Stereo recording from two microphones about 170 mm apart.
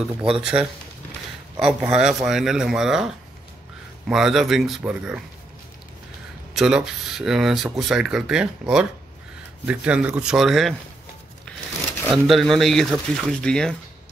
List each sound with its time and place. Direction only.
0.2 s speech: 5° right (ahead or behind)
6.5 s speech: 5° right (ahead or behind)
12.1 s speech: centre (ahead or behind)